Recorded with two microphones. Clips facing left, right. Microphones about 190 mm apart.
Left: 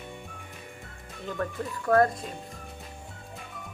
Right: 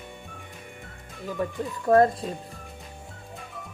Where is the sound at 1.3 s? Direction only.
20° right (ahead or behind).